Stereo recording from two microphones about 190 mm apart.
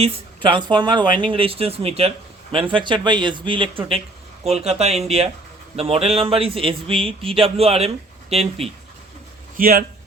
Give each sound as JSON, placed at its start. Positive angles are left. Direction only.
{"t": 0.0, "sound": "speech", "side_deg": -25}
{"t": 9.6, "sound": "speech", "side_deg": -50}